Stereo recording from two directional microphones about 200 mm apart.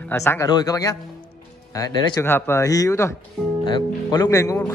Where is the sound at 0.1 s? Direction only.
15° left (ahead or behind).